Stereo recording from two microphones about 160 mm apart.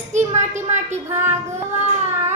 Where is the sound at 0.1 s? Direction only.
45° right (ahead or behind).